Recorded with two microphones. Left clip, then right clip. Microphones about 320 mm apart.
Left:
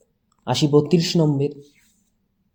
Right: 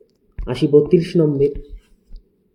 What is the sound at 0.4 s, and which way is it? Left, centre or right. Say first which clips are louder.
Speech: right 4 dB; left.